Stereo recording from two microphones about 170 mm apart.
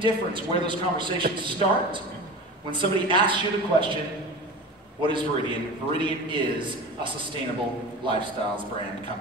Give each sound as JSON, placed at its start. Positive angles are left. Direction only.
{"t": 0.0, "sound": "a man's voice", "side_deg": -30}
{"t": 5.0, "sound": "a man's voice", "side_deg": -30}